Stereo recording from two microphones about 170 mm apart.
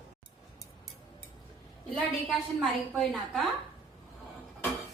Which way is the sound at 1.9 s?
5° left (ahead or behind).